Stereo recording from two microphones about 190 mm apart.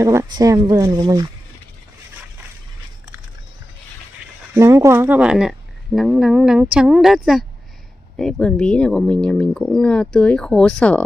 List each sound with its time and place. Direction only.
0.0 s speech: 15° right (ahead or behind)
4.6 s speech: 15° right (ahead or behind); by 11.1 s 5° left (ahead or behind)